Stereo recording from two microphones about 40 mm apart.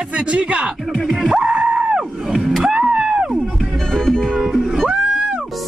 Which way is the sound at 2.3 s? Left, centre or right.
Centre.